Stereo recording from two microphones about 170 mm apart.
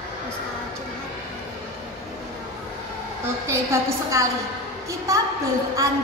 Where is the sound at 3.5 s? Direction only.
15° right (ahead or behind).